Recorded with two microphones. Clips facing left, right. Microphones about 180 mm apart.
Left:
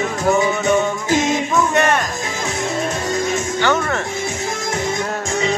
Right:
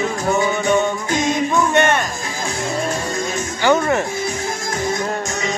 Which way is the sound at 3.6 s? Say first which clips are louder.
Right 5 dB; 15° right (ahead or behind).